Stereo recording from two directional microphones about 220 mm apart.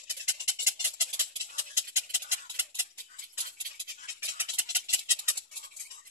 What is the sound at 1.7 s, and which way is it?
Tick-tock, 10° right (ahead or behind).